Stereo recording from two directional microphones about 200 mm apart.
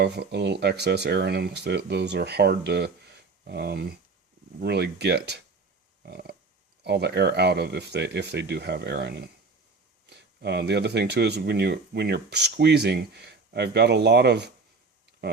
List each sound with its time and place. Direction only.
0.0 s speech: 55° right (ahead or behind)
6.0 s a sound: 55° right (ahead or behind)
6.8 s speech: 55° right (ahead or behind)